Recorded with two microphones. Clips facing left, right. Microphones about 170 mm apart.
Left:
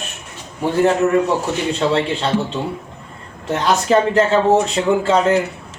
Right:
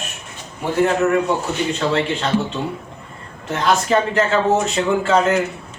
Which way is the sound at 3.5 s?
35° left (ahead or behind).